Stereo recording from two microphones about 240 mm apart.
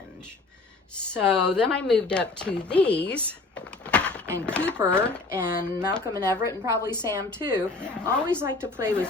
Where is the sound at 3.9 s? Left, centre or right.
Centre.